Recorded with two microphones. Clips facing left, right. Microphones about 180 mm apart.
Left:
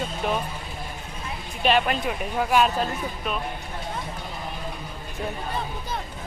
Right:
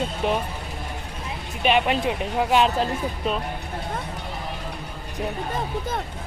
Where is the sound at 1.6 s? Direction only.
20° right (ahead or behind).